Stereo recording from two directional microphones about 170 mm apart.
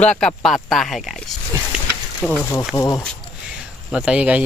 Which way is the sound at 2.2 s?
5° right (ahead or behind).